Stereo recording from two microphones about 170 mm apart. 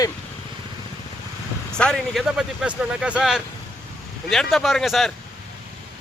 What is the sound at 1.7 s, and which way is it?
Speech, 5° left (ahead or behind).